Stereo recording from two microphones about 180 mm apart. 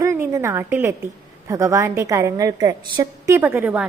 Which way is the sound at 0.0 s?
15° right (ahead or behind).